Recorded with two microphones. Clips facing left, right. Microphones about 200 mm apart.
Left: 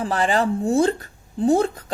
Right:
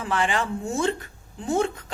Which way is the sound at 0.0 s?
35° left (ahead or behind).